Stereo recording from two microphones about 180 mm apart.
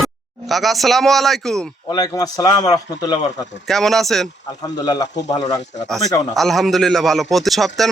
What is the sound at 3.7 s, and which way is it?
Speech, centre (ahead or behind).